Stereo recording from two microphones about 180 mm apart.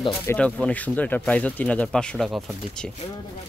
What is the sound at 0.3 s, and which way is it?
Speech, 5° left (ahead or behind).